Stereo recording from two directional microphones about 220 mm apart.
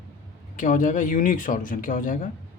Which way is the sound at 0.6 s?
35° left (ahead or behind).